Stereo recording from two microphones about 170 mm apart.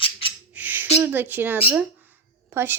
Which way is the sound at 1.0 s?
10° right (ahead or behind).